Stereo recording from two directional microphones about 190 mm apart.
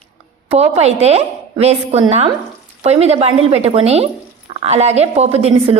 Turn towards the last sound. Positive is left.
turn(degrees=-35)  # may be behind; listen again after turning